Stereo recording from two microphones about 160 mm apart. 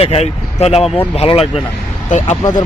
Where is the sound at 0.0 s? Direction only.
40° left (ahead or behind).